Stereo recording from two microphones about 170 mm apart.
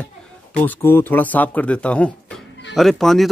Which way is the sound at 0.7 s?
15° left (ahead or behind).